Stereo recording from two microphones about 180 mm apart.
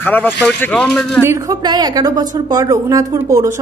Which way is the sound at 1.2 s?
20° right (ahead or behind).